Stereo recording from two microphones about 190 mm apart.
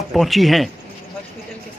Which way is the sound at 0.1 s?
Centre (ahead or behind).